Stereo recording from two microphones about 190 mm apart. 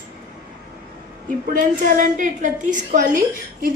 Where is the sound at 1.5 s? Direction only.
45° right (ahead or behind).